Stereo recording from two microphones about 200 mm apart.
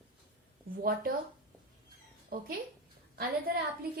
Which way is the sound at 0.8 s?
45° right (ahead or behind).